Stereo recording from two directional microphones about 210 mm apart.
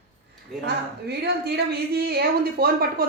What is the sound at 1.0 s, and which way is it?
A woman's voice, 50° right (ahead or behind).